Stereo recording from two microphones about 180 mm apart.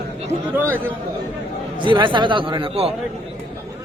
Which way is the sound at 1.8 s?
25° right (ahead or behind).